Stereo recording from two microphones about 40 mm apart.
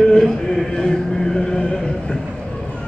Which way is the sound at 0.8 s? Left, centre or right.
Centre.